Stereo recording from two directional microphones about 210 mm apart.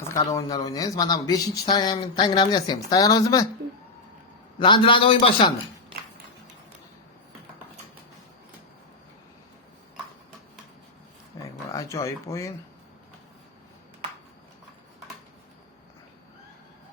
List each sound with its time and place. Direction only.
0.3 s speech: 15° left (ahead or behind)
4.6 s a man's voice: 25° left (ahead or behind)
11.4 s a sound: 15° left (ahead or behind)